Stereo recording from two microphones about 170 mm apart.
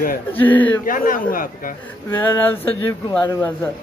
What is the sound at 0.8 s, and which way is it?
Speech, 55° left (ahead or behind).